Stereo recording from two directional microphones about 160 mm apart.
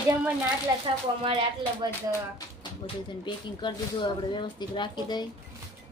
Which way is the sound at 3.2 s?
30° left (ahead or behind).